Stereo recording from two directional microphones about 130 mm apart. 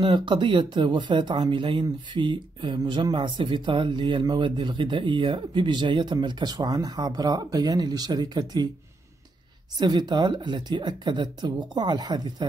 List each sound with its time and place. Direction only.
0.0 s speech: 40° right (ahead or behind)
9.8 s speech: 35° right (ahead or behind)